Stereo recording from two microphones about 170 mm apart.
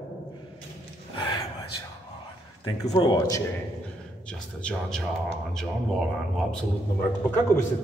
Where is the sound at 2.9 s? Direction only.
25° left (ahead or behind).